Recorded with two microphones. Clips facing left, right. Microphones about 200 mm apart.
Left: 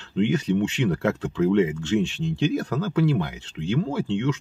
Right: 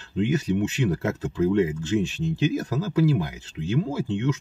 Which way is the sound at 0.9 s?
65° left (ahead or behind).